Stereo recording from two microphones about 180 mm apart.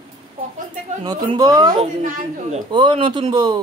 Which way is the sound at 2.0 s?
40° right (ahead or behind).